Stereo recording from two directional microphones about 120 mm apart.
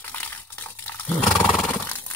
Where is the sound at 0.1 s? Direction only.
15° left (ahead or behind).